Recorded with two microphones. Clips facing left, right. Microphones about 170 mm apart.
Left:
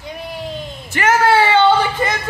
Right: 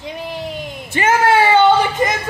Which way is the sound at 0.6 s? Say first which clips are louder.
Even; 15° right (ahead or behind).